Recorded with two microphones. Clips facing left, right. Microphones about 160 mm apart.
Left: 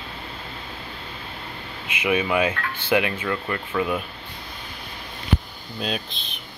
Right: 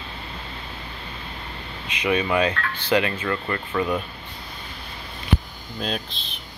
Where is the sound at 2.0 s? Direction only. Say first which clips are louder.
Even; 10° left (ahead or behind).